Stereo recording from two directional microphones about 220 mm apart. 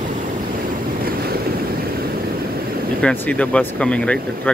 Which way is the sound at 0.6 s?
45° right (ahead or behind).